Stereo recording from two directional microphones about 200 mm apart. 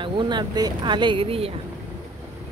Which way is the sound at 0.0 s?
25° right (ahead or behind).